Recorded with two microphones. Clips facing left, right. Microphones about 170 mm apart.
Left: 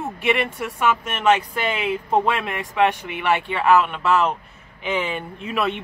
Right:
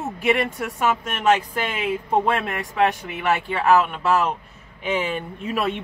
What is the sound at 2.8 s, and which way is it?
Speech, centre (ahead or behind).